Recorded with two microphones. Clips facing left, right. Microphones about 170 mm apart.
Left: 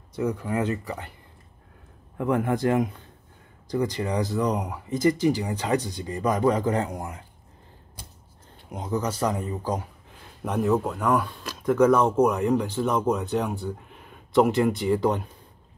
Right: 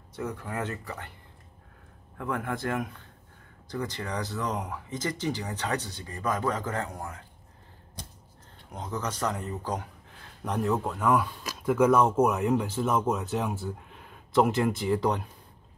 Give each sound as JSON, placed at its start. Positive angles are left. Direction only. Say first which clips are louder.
{"t": 0.1, "sound": "speech", "louder": "left 8 dB", "side_deg": 15}
{"t": 2.1, "sound": "a man's voice", "louder": "left 8 dB", "side_deg": 20}
{"t": 8.7, "sound": "speech", "louder": "left 6 dB", "side_deg": 10}